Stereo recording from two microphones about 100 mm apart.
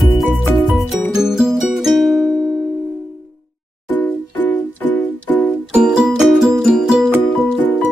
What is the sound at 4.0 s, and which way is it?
Music, 15° left (ahead or behind).